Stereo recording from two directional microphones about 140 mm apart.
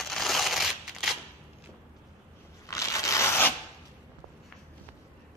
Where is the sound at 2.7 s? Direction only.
25° left (ahead or behind).